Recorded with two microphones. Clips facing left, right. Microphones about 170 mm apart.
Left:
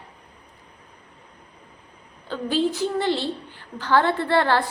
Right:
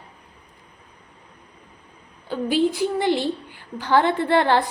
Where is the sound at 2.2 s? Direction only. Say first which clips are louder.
Right 2 dB; 15° right (ahead or behind).